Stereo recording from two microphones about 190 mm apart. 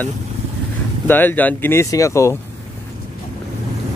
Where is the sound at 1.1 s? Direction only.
10° left (ahead or behind).